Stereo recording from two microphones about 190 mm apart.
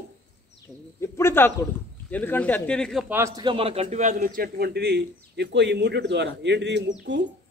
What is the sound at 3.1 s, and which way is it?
A man's voice, 15° right (ahead or behind).